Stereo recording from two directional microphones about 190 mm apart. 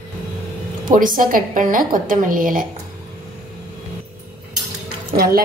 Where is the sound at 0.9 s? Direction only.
45° right (ahead or behind).